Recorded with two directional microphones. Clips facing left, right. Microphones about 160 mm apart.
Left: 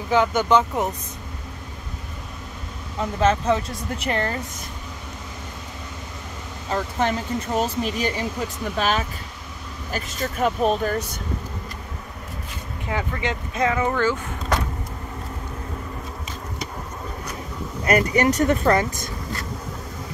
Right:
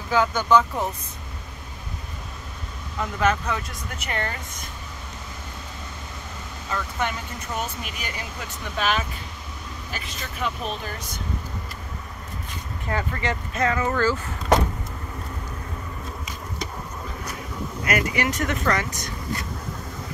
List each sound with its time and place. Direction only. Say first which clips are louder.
0.1 s speech: left 1 dB; 20° left (ahead or behind)
3.0 s speech: left 3 dB; 25° left (ahead or behind)
6.7 s speech: left 5 dB; 35° left (ahead or behind)
12.8 s speech: left 1 dB; 15° left (ahead or behind)
17.8 s speech: left 6 dB; 35° left (ahead or behind)